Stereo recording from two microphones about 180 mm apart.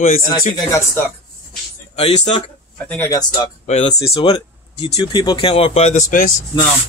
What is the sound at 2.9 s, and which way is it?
Speech, 15° left (ahead or behind).